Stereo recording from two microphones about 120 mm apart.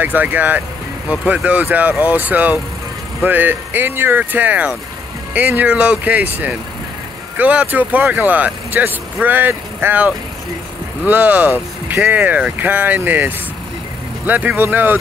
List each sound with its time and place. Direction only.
0.0 s speech: 15° right (ahead or behind)